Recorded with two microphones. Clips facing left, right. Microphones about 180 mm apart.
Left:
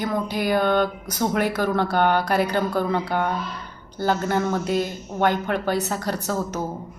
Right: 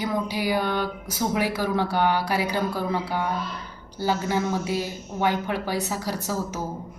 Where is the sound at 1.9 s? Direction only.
60° left (ahead or behind).